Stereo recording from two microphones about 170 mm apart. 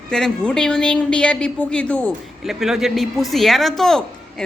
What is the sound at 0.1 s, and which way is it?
A woman's voice, 5° left (ahead or behind).